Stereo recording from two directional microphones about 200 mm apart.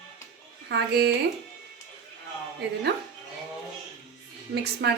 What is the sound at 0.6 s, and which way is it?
Speech, 55° right (ahead or behind).